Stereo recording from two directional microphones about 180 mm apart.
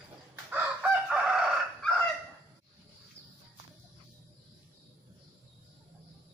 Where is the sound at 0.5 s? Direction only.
5° right (ahead or behind).